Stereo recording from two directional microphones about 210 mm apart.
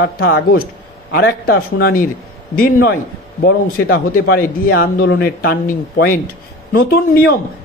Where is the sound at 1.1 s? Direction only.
45° left (ahead or behind).